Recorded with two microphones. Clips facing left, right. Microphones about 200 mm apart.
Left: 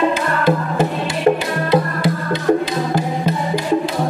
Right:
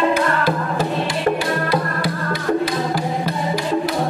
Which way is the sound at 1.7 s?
25° left (ahead or behind).